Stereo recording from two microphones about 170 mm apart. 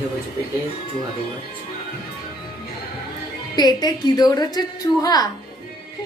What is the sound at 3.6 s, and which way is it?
A woman's voice, 25° left (ahead or behind).